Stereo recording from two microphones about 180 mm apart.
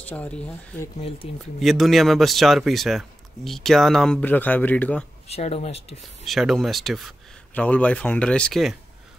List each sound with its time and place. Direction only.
0.1 s speech: 10° left (ahead or behind)
1.6 s speech: centre (ahead or behind)
5.3 s speech: 35° left (ahead or behind)
6.2 s speech: centre (ahead or behind)